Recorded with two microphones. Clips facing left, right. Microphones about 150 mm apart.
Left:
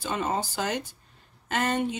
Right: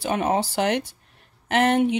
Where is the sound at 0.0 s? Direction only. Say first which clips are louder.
Right 6 dB; 70° right (ahead or behind).